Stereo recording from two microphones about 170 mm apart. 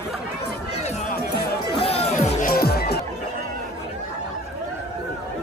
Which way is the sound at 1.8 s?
35° left (ahead or behind).